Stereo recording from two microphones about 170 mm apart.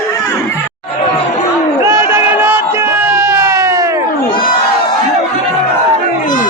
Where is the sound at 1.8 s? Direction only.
15° right (ahead or behind).